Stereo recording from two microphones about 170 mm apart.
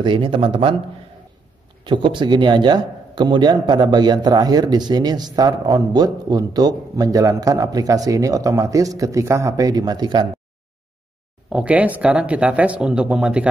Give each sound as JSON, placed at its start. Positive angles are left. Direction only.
{"t": 0.0, "sound": "speech", "side_deg": -30}
{"t": 1.9, "sound": "a man's voice", "side_deg": -30}
{"t": 11.5, "sound": "speech", "side_deg": -10}